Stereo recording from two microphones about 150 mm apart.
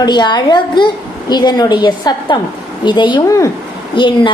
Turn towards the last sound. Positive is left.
turn(degrees=30)  # may be behind; listen again after turning